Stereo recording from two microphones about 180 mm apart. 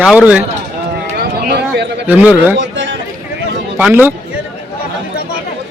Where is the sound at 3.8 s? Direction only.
10° right (ahead or behind).